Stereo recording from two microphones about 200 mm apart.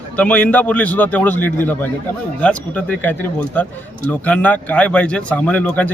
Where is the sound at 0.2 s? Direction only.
10° left (ahead or behind).